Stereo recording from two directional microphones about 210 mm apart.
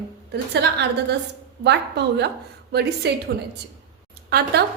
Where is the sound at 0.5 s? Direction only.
50° right (ahead or behind).